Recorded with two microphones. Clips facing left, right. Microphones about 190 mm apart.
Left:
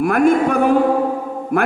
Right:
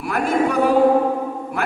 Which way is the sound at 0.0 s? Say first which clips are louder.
Left 6 dB; 50° left (ahead or behind).